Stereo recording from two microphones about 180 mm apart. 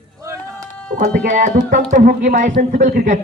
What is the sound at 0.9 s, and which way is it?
Music, 40° right (ahead or behind).